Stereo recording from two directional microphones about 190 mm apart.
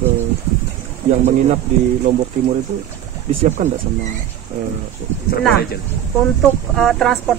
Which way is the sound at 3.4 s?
40° right (ahead or behind).